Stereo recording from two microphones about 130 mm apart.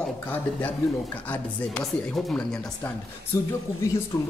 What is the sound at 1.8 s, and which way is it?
Speech, centre (ahead or behind).